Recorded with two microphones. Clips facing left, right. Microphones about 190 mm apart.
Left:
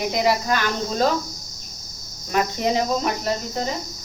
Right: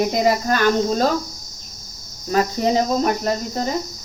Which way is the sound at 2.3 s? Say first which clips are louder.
Right 3 dB; 40° right (ahead or behind).